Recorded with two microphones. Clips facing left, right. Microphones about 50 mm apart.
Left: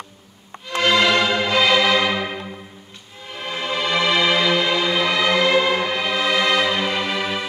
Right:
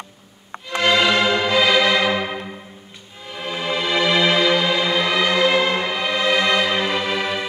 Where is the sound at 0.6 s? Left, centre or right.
Centre.